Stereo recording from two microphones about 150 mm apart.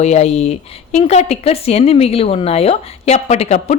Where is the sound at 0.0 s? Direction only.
45° left (ahead or behind).